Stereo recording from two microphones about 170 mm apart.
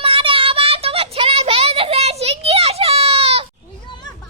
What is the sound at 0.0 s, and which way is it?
Child singing, 30° right (ahead or behind).